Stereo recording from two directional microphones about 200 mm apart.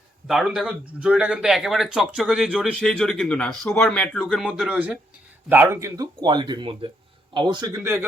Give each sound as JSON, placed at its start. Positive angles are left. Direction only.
{"t": 0.3, "sound": "speech", "side_deg": 0}